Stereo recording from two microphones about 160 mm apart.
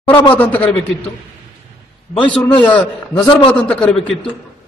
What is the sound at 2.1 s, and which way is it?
A man's voice, 10° left (ahead or behind).